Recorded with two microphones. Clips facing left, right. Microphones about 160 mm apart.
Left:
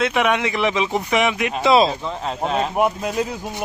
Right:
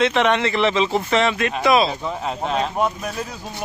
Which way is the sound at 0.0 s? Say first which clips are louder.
Right 1 dB; 10° left (ahead or behind).